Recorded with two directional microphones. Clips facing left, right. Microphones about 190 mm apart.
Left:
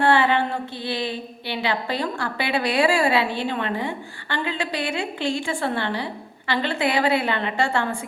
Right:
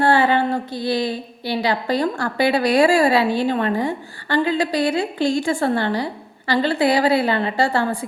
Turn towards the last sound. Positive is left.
turn(degrees=-35)  # may be behind; listen again after turning